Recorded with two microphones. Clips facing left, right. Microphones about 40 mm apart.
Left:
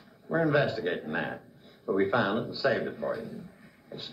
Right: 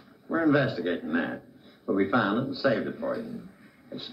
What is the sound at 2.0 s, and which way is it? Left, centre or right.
Speech, centre.